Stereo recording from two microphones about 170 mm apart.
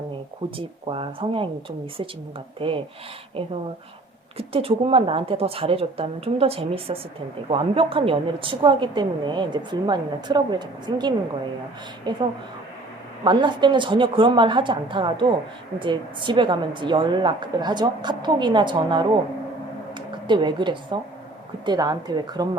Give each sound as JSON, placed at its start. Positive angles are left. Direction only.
{"t": 0.5, "sound": "a woman's voice", "side_deg": -30}
{"t": 2.6, "sound": "a woman's voice", "side_deg": -30}
{"t": 4.4, "sound": "a woman's voice", "side_deg": -35}
{"t": 13.2, "sound": "a woman's voice", "side_deg": -25}